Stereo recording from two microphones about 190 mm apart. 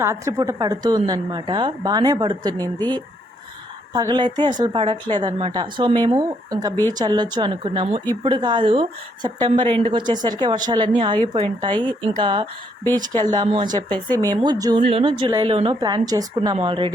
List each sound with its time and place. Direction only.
0.0 s a woman's voice: 15° right (ahead or behind)
3.9 s a woman's voice: 20° right (ahead or behind)